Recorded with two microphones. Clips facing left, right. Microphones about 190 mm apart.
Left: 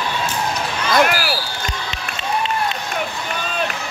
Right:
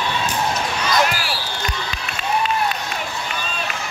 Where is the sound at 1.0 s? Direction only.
60° left (ahead or behind).